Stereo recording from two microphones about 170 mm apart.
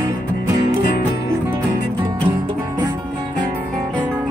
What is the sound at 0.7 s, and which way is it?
Music, 50° left (ahead or behind).